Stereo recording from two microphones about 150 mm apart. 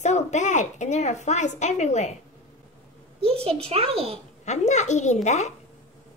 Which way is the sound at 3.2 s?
40° right (ahead or behind).